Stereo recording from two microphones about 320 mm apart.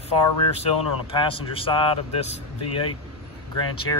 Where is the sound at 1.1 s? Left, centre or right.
Centre.